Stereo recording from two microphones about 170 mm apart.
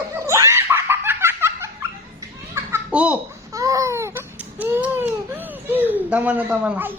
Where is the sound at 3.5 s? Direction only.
20° right (ahead or behind).